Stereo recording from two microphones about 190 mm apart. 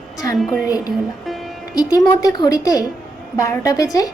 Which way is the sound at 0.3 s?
Centre (ahead or behind).